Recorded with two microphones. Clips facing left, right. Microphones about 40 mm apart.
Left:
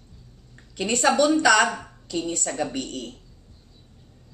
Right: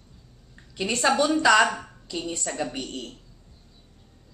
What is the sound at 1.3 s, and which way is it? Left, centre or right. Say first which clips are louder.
Speech: even; centre.